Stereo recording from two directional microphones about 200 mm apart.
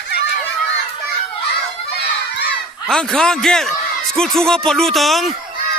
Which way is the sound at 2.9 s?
5° left (ahead or behind).